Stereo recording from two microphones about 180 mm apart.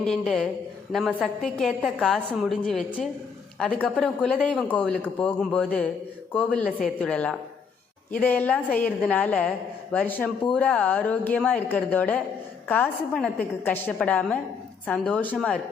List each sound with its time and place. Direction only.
0.0 s a woman's voice: centre (ahead or behind)